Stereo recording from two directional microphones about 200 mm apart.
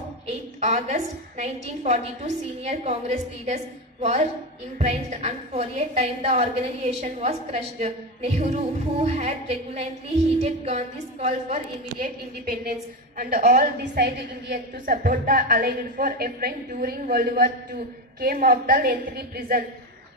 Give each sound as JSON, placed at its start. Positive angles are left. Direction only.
{"t": 0.3, "sound": "a woman's voice", "side_deg": -35}
{"t": 13.4, "sound": "a woman's voice", "side_deg": -45}